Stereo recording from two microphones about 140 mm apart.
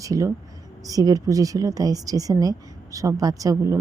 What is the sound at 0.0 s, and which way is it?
A woman's voice, 25° right (ahead or behind).